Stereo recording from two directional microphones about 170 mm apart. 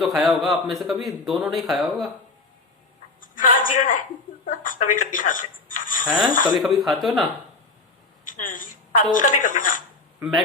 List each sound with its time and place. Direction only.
0.0 s speech: centre (ahead or behind)
3.2 s a sound: 50° left (ahead or behind)
4.4 s telephone: 50° left (ahead or behind)
6.3 s a woman's voice: 50° left (ahead or behind)
6.6 s speech: centre (ahead or behind)
8.3 s a woman's voice: 50° left (ahead or behind)